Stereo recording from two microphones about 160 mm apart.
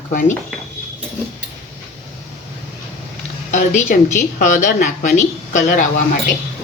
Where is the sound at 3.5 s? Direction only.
50° left (ahead or behind).